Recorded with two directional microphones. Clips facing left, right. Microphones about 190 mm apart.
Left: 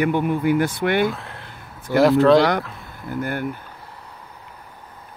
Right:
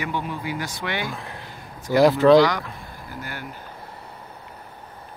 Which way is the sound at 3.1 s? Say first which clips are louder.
Left 11 dB; 55° left (ahead or behind).